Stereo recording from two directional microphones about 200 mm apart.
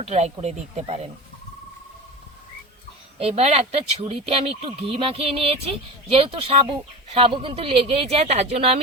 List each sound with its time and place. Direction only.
0.0 s speech: 30° right (ahead or behind)
3.2 s speech: 30° right (ahead or behind)